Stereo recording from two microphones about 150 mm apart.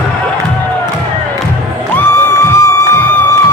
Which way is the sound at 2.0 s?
15° left (ahead or behind).